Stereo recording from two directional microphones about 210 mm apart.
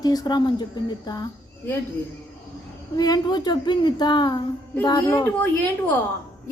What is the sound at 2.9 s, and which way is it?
A woman's voice, 20° left (ahead or behind).